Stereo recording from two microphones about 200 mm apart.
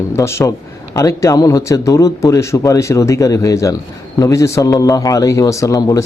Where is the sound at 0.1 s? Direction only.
15° left (ahead or behind).